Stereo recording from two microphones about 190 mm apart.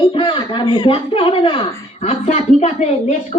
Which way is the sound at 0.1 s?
25° left (ahead or behind).